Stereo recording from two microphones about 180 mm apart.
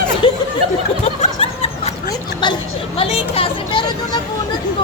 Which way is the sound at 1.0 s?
35° left (ahead or behind).